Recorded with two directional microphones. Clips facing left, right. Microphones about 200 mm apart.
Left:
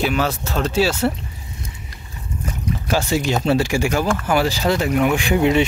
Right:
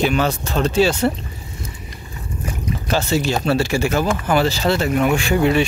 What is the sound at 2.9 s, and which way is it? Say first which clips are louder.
Speech: right 1 dB; 10° left (ahead or behind).